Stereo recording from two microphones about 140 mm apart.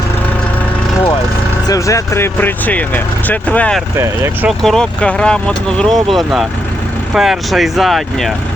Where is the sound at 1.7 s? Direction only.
20° left (ahead or behind).